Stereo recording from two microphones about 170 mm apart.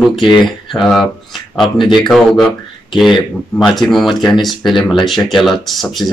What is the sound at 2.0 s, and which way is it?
A man's voice, centre (ahead or behind).